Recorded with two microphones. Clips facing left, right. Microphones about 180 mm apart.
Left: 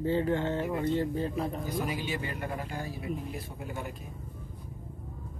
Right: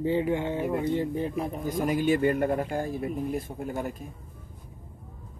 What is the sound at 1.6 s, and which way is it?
A man's voice, 50° right (ahead or behind).